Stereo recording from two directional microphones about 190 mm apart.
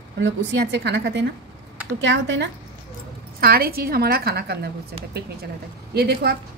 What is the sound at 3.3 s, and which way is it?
A woman's voice, 55° right (ahead or behind).